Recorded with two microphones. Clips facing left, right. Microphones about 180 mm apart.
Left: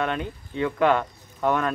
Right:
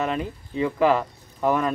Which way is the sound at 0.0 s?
5° right (ahead or behind).